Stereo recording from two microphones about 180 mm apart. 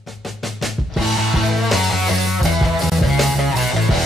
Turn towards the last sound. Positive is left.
turn(degrees=0)  # may be behind; listen again after turning